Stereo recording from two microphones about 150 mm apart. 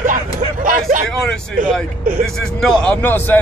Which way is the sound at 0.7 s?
70° right (ahead or behind).